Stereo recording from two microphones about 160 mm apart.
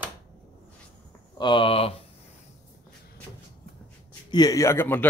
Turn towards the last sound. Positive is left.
turn(degrees=15)  # may be behind; listen again after turning